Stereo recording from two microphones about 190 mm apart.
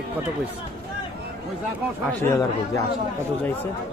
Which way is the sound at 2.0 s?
15° left (ahead or behind).